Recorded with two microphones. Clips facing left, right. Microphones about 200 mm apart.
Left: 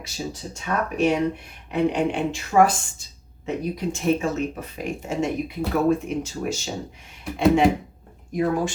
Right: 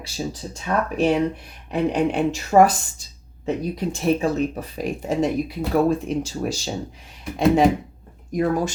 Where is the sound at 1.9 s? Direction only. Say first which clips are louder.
Right 3 dB; 40° right (ahead or behind).